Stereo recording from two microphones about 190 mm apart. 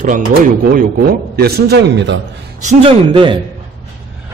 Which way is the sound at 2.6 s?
30° right (ahead or behind).